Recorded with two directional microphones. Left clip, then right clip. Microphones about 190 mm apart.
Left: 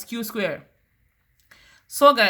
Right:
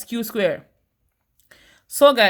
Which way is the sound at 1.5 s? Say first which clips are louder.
Right 1 dB; 35° right (ahead or behind).